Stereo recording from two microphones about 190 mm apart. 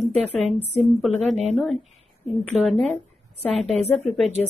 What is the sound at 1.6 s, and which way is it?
A woman's voice, centre (ahead or behind).